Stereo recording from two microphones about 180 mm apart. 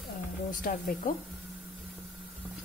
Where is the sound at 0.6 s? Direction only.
55° left (ahead or behind).